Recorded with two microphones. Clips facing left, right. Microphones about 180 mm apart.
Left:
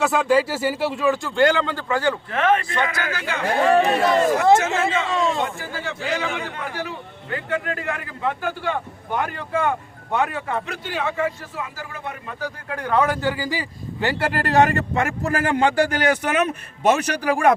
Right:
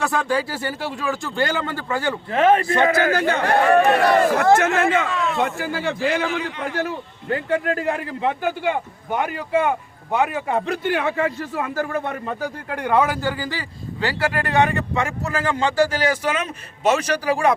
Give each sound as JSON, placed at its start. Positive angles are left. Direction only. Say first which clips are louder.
{"t": 0.0, "sound": "speech", "louder": "left 4 dB", "side_deg": 0}
{"t": 2.3, "sound": "a man's voice", "louder": "right 7 dB", "side_deg": -30}
{"t": 3.4, "sound": "speech", "louder": "even", "side_deg": -60}
{"t": 5.1, "sound": "a man's voice", "louder": "left 2 dB", "side_deg": 30}
{"t": 5.5, "sound": "speech", "louder": "right 6 dB", "side_deg": -65}
{"t": 6.7, "sound": "a man's voice", "louder": "right 5 dB", "side_deg": -45}
{"t": 8.2, "sound": "a man's voice", "louder": "right 2 dB", "side_deg": -20}
{"t": 10.8, "sound": "speech", "louder": "even", "side_deg": -60}
{"t": 12.8, "sound": "speech", "louder": "right 1 dB", "side_deg": -10}
{"t": 14.5, "sound": "speech", "louder": "left 3 dB", "side_deg": 45}